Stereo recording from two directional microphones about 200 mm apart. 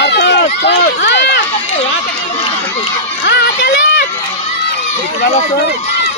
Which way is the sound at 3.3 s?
55° left (ahead or behind).